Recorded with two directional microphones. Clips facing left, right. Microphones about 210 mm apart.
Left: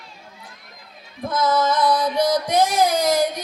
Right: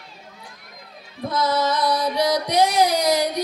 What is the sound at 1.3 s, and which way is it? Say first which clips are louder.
Female singing: left 2 dB; 50° left (ahead or behind).